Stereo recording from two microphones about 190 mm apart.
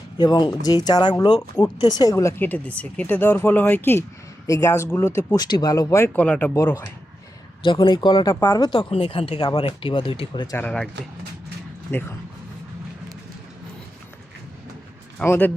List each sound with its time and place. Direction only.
0.2 s speech: 20° left (ahead or behind)
11.9 s speech: 10° left (ahead or behind)
15.2 s speech: 10° left (ahead or behind)